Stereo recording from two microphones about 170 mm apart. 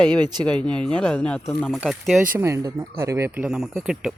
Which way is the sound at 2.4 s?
15° right (ahead or behind).